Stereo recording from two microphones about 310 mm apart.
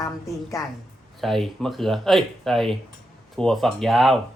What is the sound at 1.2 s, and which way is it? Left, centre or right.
Speech, centre.